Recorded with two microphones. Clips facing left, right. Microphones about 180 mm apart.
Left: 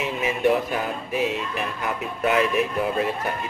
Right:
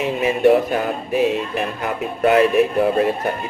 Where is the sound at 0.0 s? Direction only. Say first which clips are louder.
Right 6 dB; 60° right (ahead or behind).